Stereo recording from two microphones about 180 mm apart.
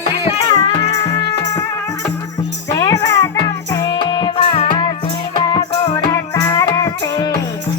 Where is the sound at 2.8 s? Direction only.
20° left (ahead or behind).